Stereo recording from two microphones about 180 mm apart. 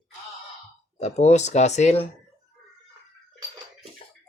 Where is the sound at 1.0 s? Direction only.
40° left (ahead or behind).